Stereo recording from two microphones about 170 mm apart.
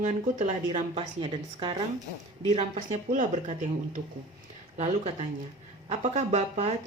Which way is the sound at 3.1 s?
45° right (ahead or behind).